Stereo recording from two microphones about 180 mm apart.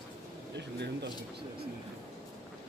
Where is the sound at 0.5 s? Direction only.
70° right (ahead or behind).